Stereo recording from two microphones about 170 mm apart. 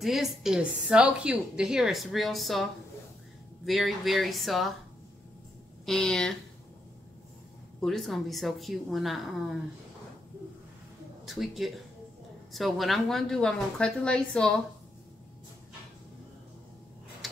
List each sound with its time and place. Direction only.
0.0 s a woman's voice: centre (ahead or behind)
5.9 s a woman's voice: 5° left (ahead or behind)
7.8 s a woman's voice: centre (ahead or behind)
11.2 s a woman's voice: centre (ahead or behind)